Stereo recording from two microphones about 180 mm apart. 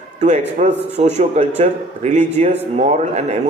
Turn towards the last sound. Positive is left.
turn(degrees=-40)  # may be behind; listen again after turning